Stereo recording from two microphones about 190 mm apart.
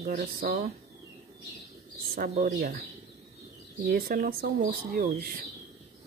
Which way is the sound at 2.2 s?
40° right (ahead or behind).